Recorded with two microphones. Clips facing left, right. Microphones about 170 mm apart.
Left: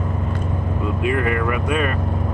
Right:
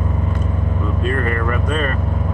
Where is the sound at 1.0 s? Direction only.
10° left (ahead or behind).